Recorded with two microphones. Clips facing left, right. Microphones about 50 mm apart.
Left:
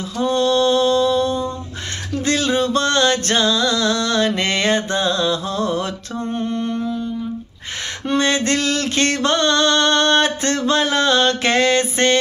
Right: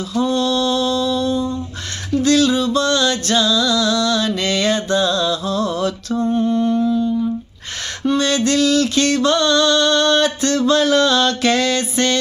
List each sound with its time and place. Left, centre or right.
0.1 s mantra: left
2.2 s music: left
8.1 s music: left